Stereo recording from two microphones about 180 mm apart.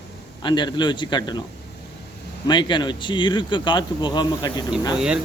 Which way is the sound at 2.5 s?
25° left (ahead or behind).